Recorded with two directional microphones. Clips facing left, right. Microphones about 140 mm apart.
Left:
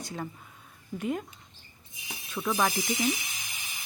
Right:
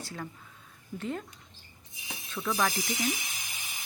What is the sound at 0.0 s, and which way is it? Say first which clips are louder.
Speech: left 3 dB; 20° left (ahead or behind).